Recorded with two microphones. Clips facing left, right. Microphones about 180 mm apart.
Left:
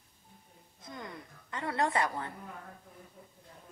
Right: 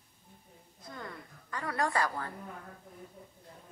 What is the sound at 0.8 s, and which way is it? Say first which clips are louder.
A woman's voice: even; 20° left (ahead or behind).